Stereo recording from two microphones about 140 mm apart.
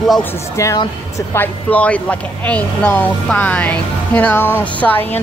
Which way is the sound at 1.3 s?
10° left (ahead or behind).